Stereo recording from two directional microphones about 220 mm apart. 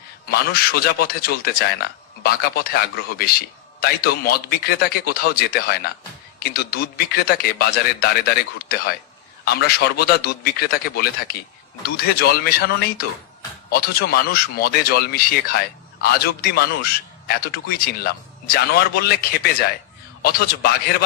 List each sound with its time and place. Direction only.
0.3 s speech: 45° left (ahead or behind)
20.2 s speech: 45° left (ahead or behind)